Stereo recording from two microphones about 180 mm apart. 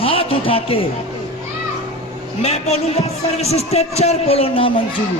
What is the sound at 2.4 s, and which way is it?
A man's voice, 35° left (ahead or behind).